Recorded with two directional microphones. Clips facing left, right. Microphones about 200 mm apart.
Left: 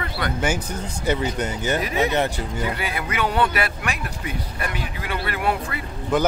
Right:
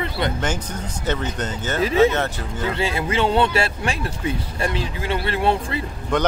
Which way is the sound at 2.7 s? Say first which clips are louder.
Right 5 dB; 25° right (ahead or behind).